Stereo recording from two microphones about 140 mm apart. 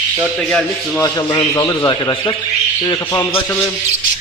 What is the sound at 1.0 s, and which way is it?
A man's voice, 30° left (ahead or behind).